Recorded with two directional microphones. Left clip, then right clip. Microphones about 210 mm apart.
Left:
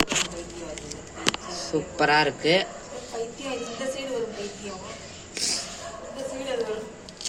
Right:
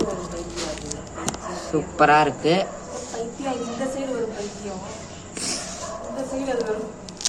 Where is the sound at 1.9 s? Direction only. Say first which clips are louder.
Right 5 dB; 10° left (ahead or behind).